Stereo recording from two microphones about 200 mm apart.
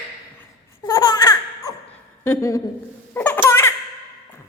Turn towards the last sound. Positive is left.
turn(degrees=10)  # may be behind; listen again after turning